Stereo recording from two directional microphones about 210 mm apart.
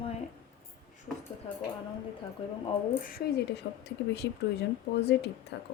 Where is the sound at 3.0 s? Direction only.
45° left (ahead or behind).